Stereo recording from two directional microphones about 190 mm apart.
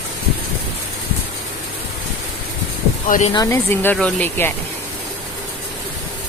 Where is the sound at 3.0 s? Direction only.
40° left (ahead or behind).